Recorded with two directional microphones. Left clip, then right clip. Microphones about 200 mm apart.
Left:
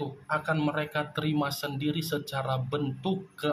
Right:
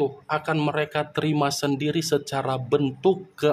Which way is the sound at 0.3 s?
50° right (ahead or behind).